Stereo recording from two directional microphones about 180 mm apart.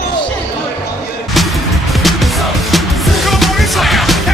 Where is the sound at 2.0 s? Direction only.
Centre (ahead or behind).